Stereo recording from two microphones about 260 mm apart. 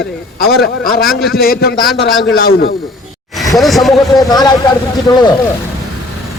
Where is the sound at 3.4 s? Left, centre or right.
Centre.